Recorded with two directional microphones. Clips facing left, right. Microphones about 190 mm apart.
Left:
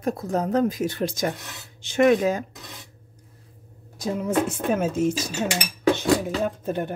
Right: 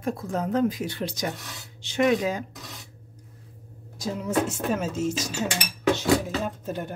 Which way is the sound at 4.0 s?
55° left (ahead or behind).